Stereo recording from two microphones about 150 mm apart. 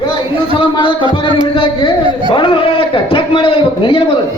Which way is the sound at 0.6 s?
35° left (ahead or behind).